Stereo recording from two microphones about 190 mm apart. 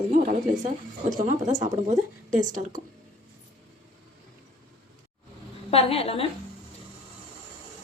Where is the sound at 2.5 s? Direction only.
45° right (ahead or behind).